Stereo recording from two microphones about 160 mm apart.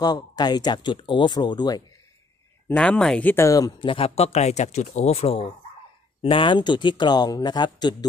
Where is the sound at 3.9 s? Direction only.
35° left (ahead or behind).